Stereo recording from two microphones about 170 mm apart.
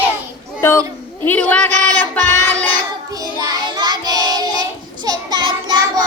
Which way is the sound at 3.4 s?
25° right (ahead or behind).